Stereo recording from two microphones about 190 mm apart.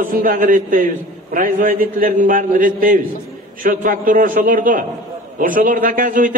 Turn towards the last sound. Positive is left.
turn(degrees=-45)  # may be behind; listen again after turning